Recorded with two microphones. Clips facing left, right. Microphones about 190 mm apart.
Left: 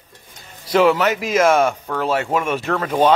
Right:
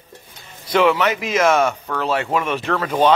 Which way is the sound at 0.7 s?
40° left (ahead or behind).